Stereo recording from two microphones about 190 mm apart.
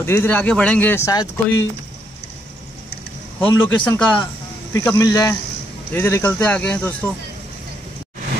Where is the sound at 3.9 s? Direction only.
5° left (ahead or behind).